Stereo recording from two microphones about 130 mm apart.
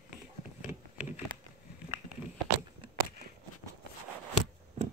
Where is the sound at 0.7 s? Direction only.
15° right (ahead or behind).